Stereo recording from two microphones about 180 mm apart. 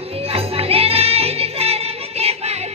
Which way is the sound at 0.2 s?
35° right (ahead or behind).